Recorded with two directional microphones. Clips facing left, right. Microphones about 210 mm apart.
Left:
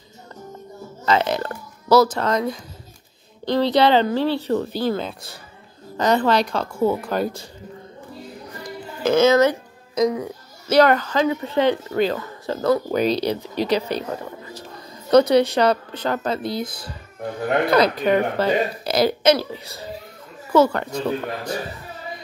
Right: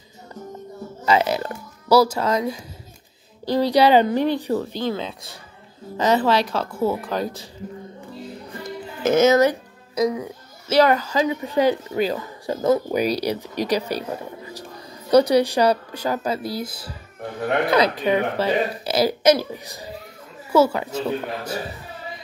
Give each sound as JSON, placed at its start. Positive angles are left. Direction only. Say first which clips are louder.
{"t": 1.0, "sound": "a woman's voice", "louder": "even", "side_deg": -10}
{"t": 4.6, "sound": "speech", "louder": "left 2 dB", "side_deg": 5}
{"t": 8.6, "sound": "music", "louder": "even", "side_deg": -20}
{"t": 10.7, "sound": "a woman's voice", "louder": "left 1 dB", "side_deg": -5}